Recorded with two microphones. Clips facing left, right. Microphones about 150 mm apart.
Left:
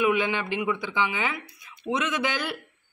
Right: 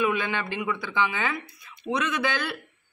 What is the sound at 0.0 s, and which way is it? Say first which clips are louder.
Speech: left 2 dB; 15° left (ahead or behind).